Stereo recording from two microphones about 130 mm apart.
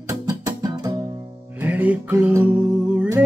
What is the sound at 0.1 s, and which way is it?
Music, 25° right (ahead or behind).